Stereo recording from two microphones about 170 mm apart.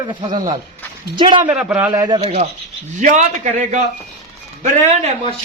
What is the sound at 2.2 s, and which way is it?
A man's voice, 40° right (ahead or behind).